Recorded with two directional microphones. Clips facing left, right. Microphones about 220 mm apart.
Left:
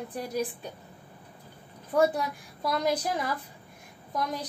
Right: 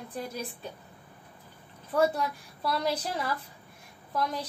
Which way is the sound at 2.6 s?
15° left (ahead or behind).